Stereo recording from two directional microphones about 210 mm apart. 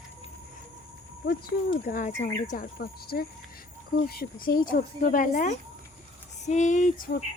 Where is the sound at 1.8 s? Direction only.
40° left (ahead or behind).